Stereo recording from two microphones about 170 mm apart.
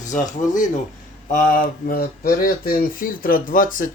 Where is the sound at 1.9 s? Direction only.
60° left (ahead or behind).